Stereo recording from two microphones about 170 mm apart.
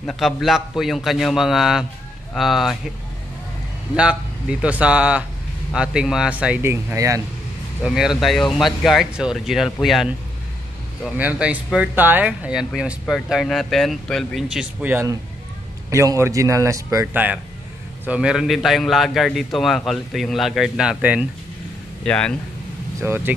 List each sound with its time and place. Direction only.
0.0 s speech: centre (ahead or behind)
3.9 s a man's voice: 5° right (ahead or behind)
7.8 s a man's voice: 5° right (ahead or behind)
22.0 s speech: 5° left (ahead or behind)
22.9 s speech: 15° right (ahead or behind)